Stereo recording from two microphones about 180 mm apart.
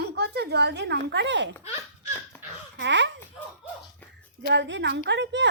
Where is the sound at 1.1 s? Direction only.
85° right.